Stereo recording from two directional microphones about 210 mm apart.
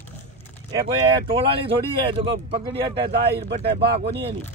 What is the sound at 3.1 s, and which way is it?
Speech, 50° right (ahead or behind).